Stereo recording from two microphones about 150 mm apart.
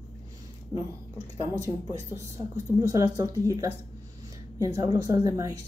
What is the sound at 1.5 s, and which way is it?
Speech, 20° right (ahead or behind).